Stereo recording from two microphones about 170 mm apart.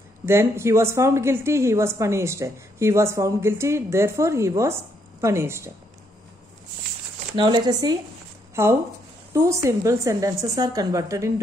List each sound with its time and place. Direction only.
0.2 s a woman's voice: 15° right (ahead or behind)
7.3 s a woman's voice: 25° right (ahead or behind)